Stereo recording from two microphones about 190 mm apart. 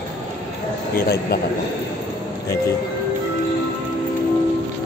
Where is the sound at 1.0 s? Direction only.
55° left (ahead or behind).